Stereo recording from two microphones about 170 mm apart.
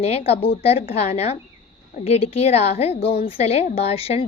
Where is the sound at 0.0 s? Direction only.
35° left (ahead or behind).